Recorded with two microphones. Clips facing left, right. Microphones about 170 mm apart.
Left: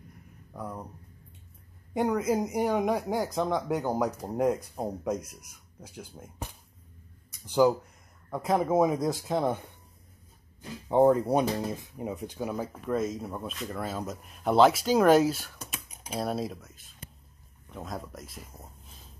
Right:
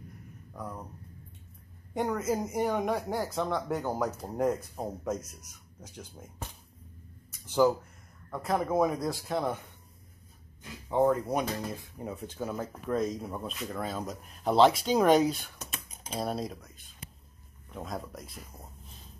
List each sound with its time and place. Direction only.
0.5 s speech: 10° left (ahead or behind)
2.0 s speech: 10° left (ahead or behind)
10.6 s speech: 30° left (ahead or behind); by 12.6 s 15° left (ahead or behind)
12.8 s speech: centre (ahead or behind)
15.7 s computer keyboard: 10° left (ahead or behind)
16.2 s speech: centre (ahead or behind)